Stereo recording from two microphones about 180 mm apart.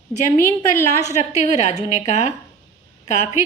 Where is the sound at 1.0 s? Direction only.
40° left (ahead or behind).